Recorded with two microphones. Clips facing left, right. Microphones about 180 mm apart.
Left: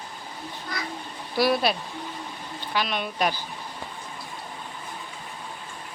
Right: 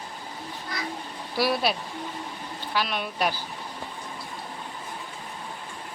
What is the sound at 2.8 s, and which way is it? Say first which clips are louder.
Speech: left 1 dB; 5° right (ahead or behind).